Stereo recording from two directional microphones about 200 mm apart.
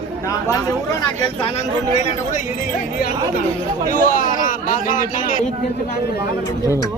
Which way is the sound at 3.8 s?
45° left (ahead or behind).